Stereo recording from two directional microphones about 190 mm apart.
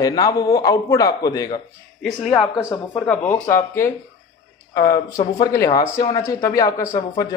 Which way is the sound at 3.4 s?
10° left (ahead or behind).